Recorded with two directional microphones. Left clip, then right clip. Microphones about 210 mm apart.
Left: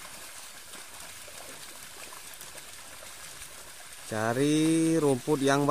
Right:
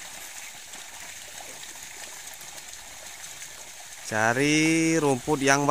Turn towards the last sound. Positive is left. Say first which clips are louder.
# right 3 dB
turn(degrees=-5)  # may be behind; listen again after turning